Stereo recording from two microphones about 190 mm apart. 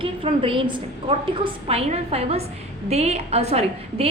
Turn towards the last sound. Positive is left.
turn(degrees=-35)  # may be behind; listen again after turning